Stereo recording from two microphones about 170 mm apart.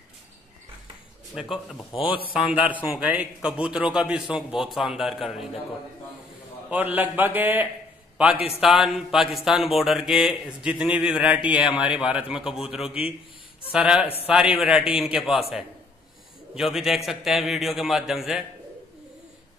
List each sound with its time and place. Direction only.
1.3 s speech: 5° right (ahead or behind)
1.9 s a man's voice: 30° left (ahead or behind)
2.3 s a man's voice: 5° right (ahead or behind)
6.7 s a man's voice: 10° right (ahead or behind)
16.5 s speech: centre (ahead or behind)